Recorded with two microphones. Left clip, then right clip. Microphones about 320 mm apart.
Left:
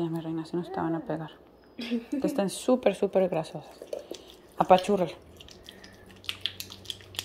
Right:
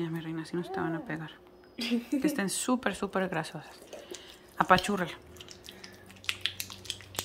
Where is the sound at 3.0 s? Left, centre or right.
Right.